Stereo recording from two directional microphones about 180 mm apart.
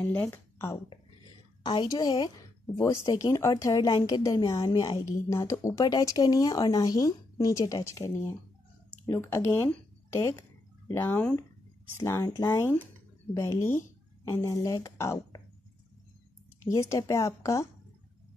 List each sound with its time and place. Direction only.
0.0 s speech: 10° left (ahead or behind)
1.6 s speech: 25° left (ahead or behind)
16.6 s speech: 15° left (ahead or behind)